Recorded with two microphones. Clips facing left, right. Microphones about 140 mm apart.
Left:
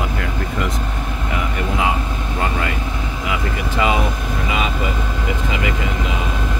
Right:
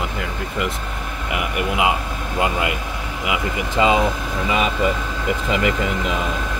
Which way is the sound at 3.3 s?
20° right (ahead or behind).